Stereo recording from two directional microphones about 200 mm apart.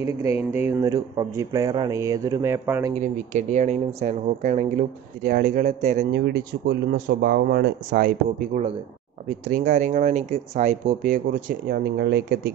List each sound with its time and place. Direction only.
0.2 s speech: 30° left (ahead or behind)
0.7 s speech: 15° right (ahead or behind)
3.0 s speech: 35° right (ahead or behind)
6.1 s speech: 55° right (ahead or behind)
9.5 s speech: 35° right (ahead or behind); by 12.4 s 55° right (ahead or behind)